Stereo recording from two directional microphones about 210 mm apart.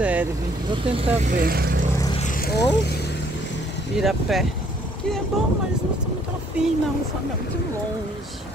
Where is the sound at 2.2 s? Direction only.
40° left (ahead or behind).